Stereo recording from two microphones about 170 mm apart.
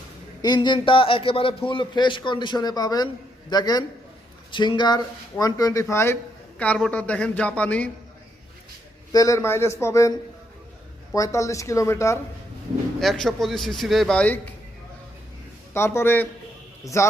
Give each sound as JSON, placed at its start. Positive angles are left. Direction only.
{"t": 0.4, "sound": "a man's voice", "side_deg": 25}
{"t": 9.1, "sound": "speech", "side_deg": 20}
{"t": 13.0, "sound": "a man's voice", "side_deg": 0}
{"t": 15.7, "sound": "speech", "side_deg": 15}